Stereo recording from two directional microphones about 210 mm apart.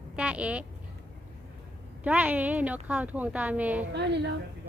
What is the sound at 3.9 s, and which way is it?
Speech, 55° right (ahead or behind).